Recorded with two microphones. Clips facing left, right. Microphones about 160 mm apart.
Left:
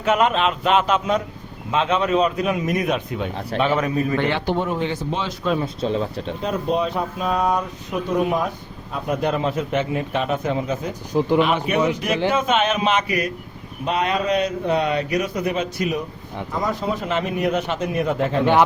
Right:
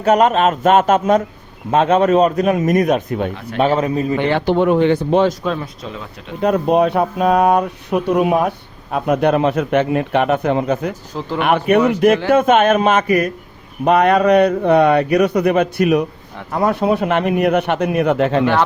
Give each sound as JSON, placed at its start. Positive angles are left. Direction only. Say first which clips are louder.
{"t": 0.0, "sound": "a man's voice", "louder": "right 6 dB", "side_deg": -40}
{"t": 3.6, "sound": "a man's voice", "louder": "right 5 dB", "side_deg": -35}
{"t": 4.4, "sound": "speech", "louder": "right 9 dB", "side_deg": -70}
{"t": 5.8, "sound": "speech", "louder": "left 8 dB", "side_deg": 30}
{"t": 6.4, "sound": "a man's voice", "louder": "right 9 dB", "side_deg": -60}